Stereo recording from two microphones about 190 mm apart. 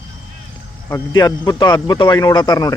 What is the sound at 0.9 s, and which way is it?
A man's voice, 20° left (ahead or behind).